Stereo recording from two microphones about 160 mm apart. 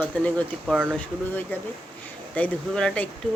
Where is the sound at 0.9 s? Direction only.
10° left (ahead or behind).